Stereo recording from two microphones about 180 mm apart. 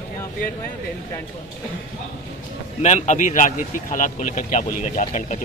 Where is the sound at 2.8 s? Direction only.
40° left (ahead or behind).